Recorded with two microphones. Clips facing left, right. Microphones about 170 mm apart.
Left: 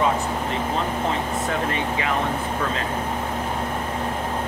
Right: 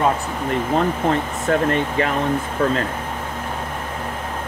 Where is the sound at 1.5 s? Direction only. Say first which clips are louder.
Right 10 dB; 50° right (ahead or behind).